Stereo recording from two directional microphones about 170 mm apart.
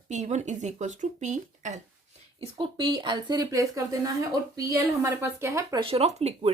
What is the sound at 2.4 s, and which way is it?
A woman's voice, 30° right (ahead or behind).